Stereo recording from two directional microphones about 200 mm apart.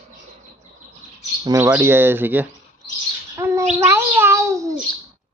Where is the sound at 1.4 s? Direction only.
15° right (ahead or behind).